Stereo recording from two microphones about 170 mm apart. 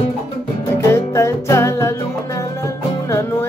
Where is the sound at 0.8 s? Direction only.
15° left (ahead or behind).